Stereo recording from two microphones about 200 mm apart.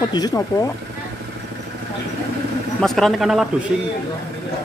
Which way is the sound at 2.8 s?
Centre (ahead or behind).